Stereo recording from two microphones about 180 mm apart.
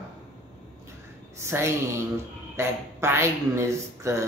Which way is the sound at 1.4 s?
15° right (ahead or behind).